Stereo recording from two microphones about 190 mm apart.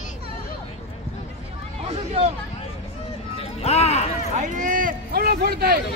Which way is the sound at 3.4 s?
35° left (ahead or behind).